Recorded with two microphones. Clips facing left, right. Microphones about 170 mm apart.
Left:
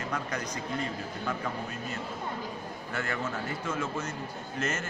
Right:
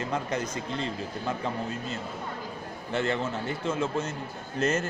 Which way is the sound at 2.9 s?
25° right (ahead or behind).